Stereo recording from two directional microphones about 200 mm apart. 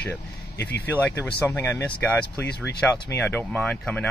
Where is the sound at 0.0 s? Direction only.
5° left (ahead or behind).